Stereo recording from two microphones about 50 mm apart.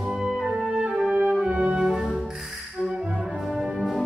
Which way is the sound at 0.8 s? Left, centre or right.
Right.